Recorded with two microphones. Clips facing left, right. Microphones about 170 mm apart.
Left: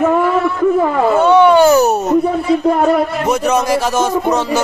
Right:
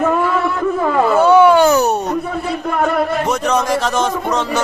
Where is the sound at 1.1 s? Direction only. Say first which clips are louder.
Even; 5° right (ahead or behind).